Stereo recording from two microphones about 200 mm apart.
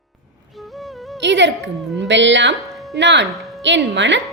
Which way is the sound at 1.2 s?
65° right (ahead or behind).